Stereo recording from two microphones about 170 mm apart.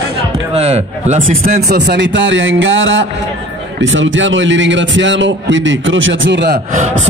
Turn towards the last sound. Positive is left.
turn(degrees=-90)